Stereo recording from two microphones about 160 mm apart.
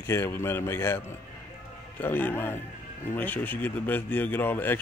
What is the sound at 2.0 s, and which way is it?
A man's voice, 10° left (ahead or behind).